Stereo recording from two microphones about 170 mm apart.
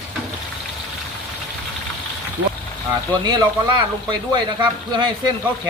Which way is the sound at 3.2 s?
25° right (ahead or behind).